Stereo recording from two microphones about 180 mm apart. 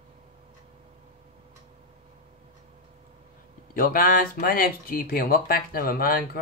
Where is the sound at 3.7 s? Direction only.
50° left (ahead or behind).